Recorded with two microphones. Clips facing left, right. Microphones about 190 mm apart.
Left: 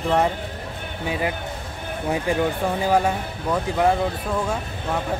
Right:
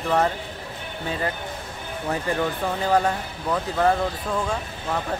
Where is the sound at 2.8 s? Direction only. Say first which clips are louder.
Even; 10° left (ahead or behind).